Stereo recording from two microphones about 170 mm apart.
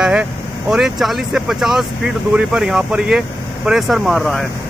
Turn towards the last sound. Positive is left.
turn(degrees=0)  # may be behind; listen again after turning